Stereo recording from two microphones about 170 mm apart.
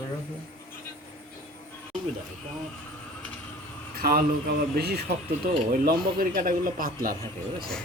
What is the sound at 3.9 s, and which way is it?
Speech, 60° right (ahead or behind).